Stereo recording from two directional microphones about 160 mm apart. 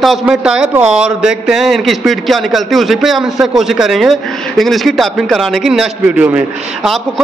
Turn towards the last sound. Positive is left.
turn(degrees=-5)  # may be behind; listen again after turning